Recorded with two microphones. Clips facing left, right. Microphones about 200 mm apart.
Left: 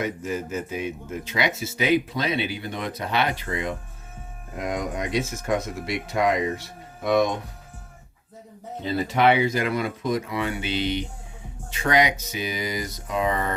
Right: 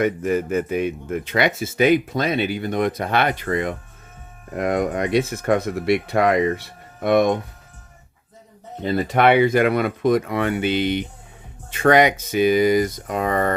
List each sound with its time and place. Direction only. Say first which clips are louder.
0.0 s speech: right 8 dB; 60° right (ahead or behind)
8.8 s speech: right 3 dB; 55° right (ahead or behind)